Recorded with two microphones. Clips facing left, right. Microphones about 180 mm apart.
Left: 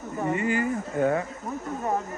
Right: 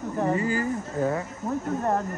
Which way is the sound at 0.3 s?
35° right (ahead or behind).